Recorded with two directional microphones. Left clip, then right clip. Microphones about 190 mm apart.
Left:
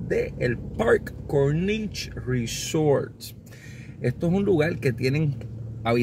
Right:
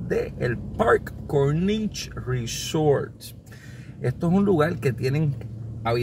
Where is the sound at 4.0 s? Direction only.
20° left (ahead or behind).